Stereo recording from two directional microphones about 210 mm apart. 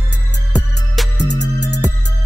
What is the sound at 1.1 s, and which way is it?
Music, 55° left (ahead or behind).